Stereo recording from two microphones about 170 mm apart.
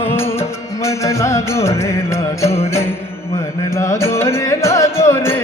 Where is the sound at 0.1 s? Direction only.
15° left (ahead or behind).